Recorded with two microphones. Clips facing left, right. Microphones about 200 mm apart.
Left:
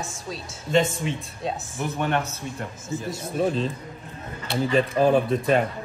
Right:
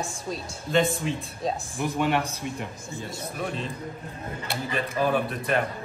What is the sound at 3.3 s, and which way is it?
Speech, 30° left (ahead or behind).